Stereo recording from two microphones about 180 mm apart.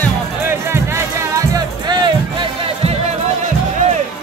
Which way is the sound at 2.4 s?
35° right (ahead or behind).